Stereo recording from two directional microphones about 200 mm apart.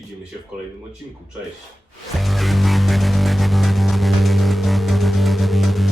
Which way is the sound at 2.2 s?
Centre (ahead or behind).